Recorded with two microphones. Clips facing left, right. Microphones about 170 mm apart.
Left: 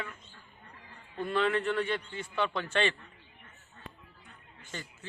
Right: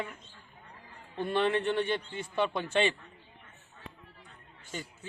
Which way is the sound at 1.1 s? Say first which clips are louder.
Right 1 dB; 25° right (ahead or behind).